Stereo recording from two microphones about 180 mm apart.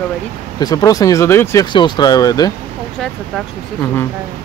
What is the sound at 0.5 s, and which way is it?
Speech, 20° left (ahead or behind).